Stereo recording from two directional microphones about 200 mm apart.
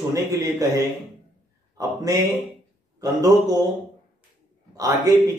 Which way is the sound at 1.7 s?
15° right (ahead or behind).